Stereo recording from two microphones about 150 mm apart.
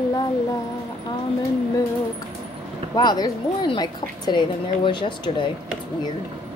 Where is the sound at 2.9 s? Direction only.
25° left (ahead or behind).